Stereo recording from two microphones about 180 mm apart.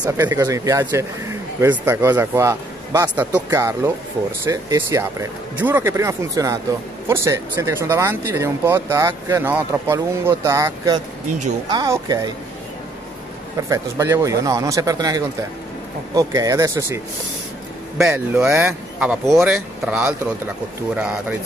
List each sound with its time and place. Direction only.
0.0 s speech: 15° right (ahead or behind)
13.6 s speech: 15° right (ahead or behind)
18.0 s speech: 15° right (ahead or behind)